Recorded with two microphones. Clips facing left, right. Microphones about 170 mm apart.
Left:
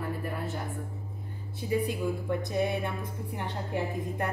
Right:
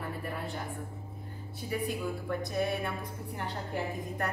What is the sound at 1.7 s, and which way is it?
A woman's voice, 20° left (ahead or behind).